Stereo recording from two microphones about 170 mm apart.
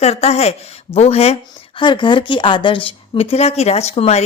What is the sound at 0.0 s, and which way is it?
Speech, 40° left (ahead or behind).